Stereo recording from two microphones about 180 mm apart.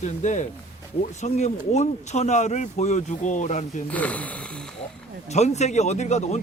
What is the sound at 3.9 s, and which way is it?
Speech, 10° left (ahead or behind).